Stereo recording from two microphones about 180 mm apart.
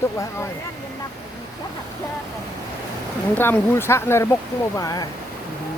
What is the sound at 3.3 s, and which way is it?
Speech, 10° left (ahead or behind).